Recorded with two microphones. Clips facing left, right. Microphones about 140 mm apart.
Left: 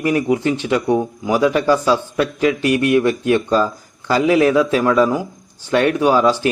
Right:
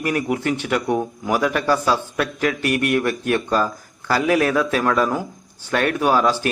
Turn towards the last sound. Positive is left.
turn(degrees=15)  # may be behind; listen again after turning